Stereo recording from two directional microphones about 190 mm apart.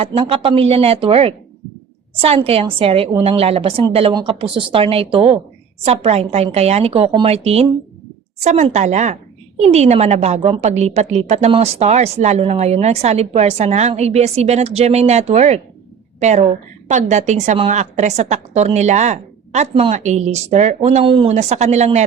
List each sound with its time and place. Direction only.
0.0 s a woman's voice: 30° right (ahead or behind)